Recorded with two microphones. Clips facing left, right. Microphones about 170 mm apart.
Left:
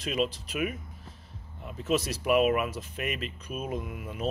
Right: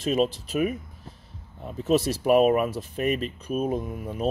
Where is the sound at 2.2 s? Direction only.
40° right (ahead or behind).